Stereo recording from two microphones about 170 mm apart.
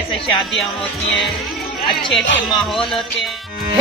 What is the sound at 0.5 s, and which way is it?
Speech, centre (ahead or behind).